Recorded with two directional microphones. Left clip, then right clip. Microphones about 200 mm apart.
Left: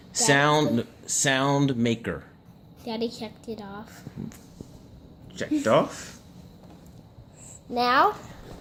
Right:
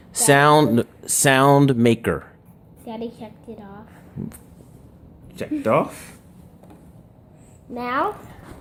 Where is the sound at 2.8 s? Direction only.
40° left (ahead or behind).